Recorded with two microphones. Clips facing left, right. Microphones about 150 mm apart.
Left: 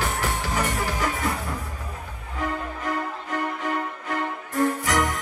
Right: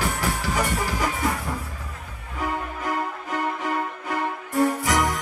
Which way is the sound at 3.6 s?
10° right (ahead or behind).